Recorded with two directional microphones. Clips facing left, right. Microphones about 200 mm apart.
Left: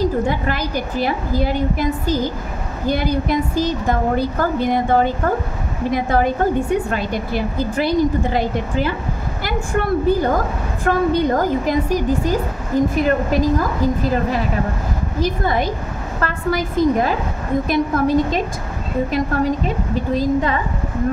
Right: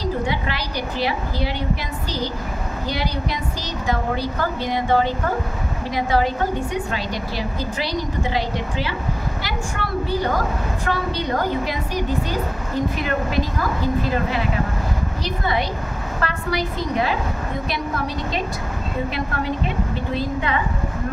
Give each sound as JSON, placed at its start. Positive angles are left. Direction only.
{"t": 0.0, "sound": "a woman's voice", "side_deg": 50}
{"t": 15.1, "sound": "a woman's voice", "side_deg": 45}